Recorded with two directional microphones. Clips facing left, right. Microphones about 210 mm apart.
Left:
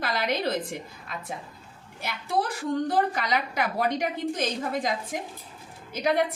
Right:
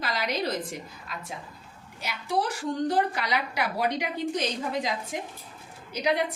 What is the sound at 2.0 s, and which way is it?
A woman's voice, 55° left (ahead or behind).